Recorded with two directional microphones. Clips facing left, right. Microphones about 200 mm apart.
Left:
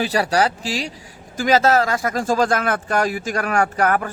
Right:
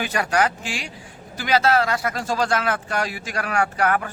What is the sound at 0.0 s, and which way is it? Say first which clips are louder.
Speech: left 3 dB; 35° left (ahead or behind).